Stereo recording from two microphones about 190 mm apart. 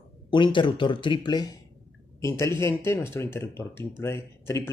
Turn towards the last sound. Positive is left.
turn(degrees=15)  # may be behind; listen again after turning